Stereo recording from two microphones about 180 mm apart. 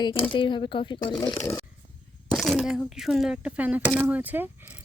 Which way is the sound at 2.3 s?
Centre (ahead or behind).